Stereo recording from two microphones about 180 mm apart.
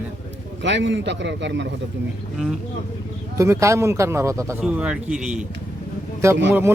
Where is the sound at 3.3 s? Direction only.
15° right (ahead or behind).